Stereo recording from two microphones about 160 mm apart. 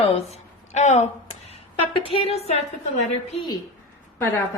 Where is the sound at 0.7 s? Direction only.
45° left (ahead or behind).